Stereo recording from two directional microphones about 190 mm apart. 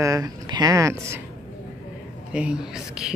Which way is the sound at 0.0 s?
20° right (ahead or behind).